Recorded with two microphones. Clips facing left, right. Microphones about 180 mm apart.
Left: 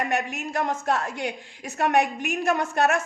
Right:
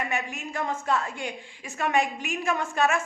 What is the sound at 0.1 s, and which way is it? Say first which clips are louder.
A woman's voice: left 5 dB; 70° left (ahead or behind).